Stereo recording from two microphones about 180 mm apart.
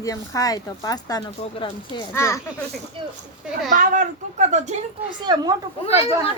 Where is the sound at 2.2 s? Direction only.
15° left (ahead or behind).